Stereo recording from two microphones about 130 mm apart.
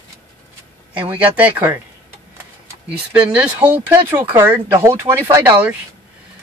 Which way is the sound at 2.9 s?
10° right (ahead or behind).